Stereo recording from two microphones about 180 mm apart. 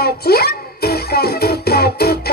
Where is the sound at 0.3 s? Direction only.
60° left (ahead or behind).